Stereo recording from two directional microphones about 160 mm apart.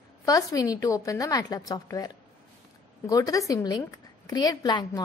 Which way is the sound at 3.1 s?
20° left (ahead or behind).